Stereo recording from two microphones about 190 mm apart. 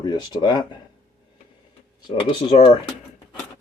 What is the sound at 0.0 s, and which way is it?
Speech, 20° left (ahead or behind).